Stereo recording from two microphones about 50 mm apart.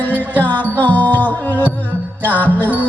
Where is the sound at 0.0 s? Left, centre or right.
Left.